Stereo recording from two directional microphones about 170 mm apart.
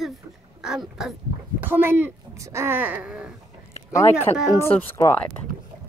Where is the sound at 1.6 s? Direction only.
15° right (ahead or behind).